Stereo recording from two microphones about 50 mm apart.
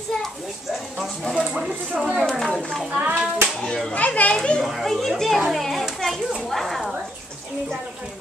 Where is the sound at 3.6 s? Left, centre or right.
Centre.